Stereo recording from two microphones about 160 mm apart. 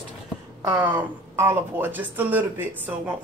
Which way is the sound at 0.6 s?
15° right (ahead or behind).